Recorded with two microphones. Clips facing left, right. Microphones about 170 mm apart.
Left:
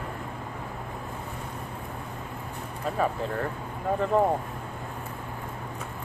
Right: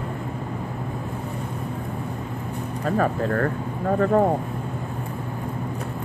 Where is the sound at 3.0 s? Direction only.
60° right (ahead or behind).